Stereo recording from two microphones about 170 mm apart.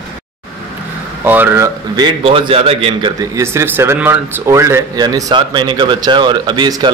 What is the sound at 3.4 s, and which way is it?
Speech, 15° right (ahead or behind).